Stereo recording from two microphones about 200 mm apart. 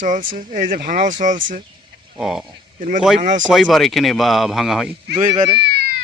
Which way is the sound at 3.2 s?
40° right (ahead or behind).